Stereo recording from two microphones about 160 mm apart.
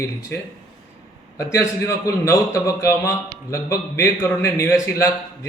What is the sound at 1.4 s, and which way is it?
A man's voice, 20° left (ahead or behind).